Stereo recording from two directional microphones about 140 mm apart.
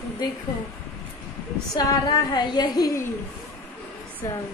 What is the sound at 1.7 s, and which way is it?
A woman's voice, 30° left (ahead or behind).